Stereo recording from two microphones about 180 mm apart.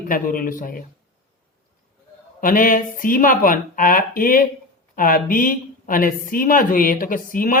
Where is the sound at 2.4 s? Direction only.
50° left (ahead or behind).